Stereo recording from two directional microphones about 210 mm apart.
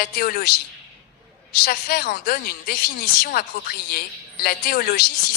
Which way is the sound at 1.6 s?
45° left (ahead or behind).